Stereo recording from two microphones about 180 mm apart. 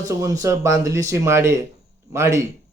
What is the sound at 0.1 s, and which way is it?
A man's voice, 20° right (ahead or behind).